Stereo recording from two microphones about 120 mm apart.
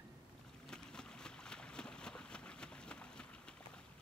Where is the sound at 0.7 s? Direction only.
5° left (ahead or behind).